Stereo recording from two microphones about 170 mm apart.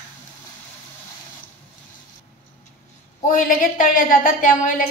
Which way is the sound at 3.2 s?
50° left (ahead or behind).